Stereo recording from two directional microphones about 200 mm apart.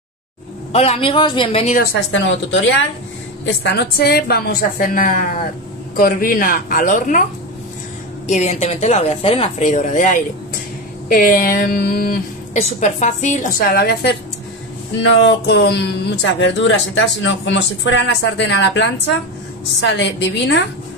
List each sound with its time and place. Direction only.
0.7 s speech: 30° left (ahead or behind)
2.0 s a woman's voice: 65° left (ahead or behind); by 7.2 s 40° left (ahead or behind)
8.3 s a woman's voice: 35° left (ahead or behind)
12.5 s speech: 35° left (ahead or behind)
15.0 s speech: 60° left (ahead or behind)